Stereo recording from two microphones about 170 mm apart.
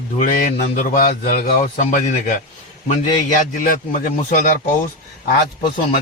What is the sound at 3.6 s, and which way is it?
Speech, 55° left (ahead or behind).